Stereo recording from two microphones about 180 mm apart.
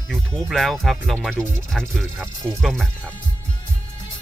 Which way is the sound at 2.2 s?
15° right (ahead or behind).